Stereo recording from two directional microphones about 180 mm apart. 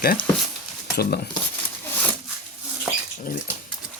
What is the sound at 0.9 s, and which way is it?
Speech, 65° left (ahead or behind).